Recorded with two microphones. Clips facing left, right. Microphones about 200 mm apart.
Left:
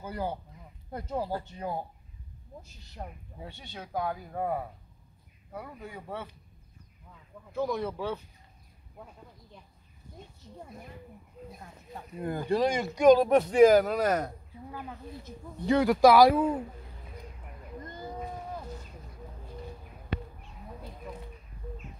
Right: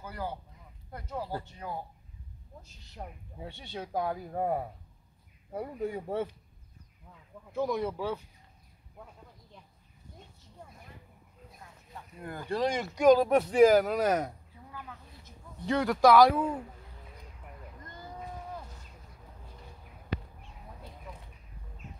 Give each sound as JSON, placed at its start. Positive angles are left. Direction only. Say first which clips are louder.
{"t": 0.0, "sound": "speech", "louder": "left 4 dB", "side_deg": 20}
{"t": 3.0, "sound": "speech", "louder": "left 1 dB", "side_deg": -5}
{"t": 3.4, "sound": "speech", "louder": "right 4 dB", "side_deg": -30}
{"t": 7.5, "sound": "speech", "louder": "even", "side_deg": -15}
{"t": 12.2, "sound": "speech", "louder": "left 7 dB", "side_deg": 20}
{"t": 12.5, "sound": "speech", "louder": "left 2 dB", "side_deg": 0}
{"t": 14.8, "sound": "speech", "louder": "left 6 dB", "side_deg": 30}
{"t": 15.6, "sound": "speech", "louder": "left 3 dB", "side_deg": 5}